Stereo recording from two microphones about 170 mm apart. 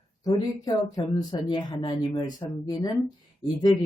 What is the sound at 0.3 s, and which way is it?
Speech, 20° left (ahead or behind).